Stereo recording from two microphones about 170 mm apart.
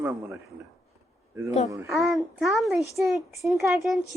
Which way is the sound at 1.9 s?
Centre (ahead or behind).